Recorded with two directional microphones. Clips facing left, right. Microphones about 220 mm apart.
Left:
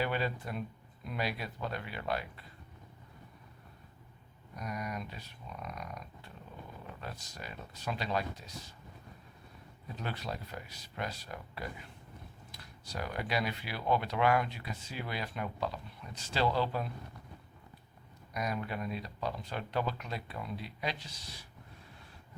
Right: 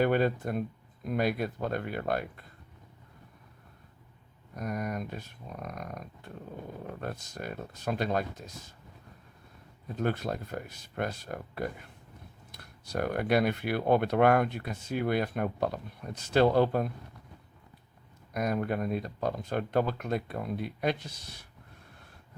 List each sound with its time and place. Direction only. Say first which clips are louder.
0.0 s speech: right 8 dB; 50° right (ahead or behind)
4.5 s speech: right 6 dB; 50° right (ahead or behind)
9.9 s speech: right 9 dB; 50° right (ahead or behind)
18.3 s speech: right 7 dB; 50° right (ahead or behind)